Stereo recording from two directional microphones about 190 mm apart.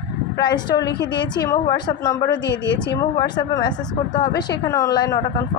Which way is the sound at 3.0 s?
20° left (ahead or behind).